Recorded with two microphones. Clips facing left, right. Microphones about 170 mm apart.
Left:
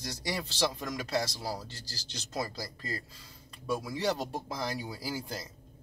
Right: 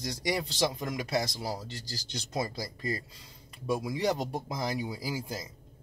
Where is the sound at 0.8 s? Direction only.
20° right (ahead or behind).